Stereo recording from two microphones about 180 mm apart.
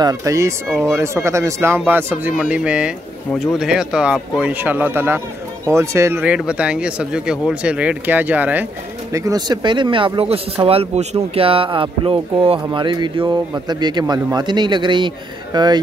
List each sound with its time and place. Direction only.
0.0 s speech: 20° right (ahead or behind)
0.7 s speech: centre (ahead or behind)
0.9 s speech: 15° right (ahead or behind)
9.1 s speech: 20° right (ahead or behind)